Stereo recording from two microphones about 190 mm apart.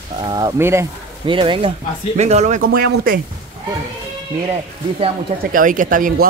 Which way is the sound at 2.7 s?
50° right (ahead or behind).